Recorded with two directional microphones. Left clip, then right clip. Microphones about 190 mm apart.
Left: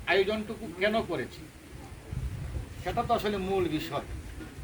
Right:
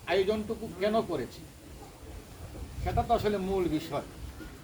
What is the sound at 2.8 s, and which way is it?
Speech, centre (ahead or behind).